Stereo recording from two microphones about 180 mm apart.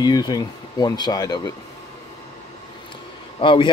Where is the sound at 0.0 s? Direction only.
20° left (ahead or behind).